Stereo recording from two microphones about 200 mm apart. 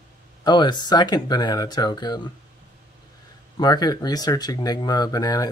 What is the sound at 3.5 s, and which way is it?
Speech, 20° left (ahead or behind).